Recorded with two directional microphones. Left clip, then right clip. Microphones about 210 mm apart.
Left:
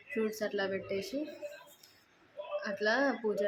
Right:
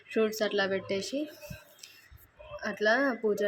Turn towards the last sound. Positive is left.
turn(degrees=-20)  # may be behind; listen again after turning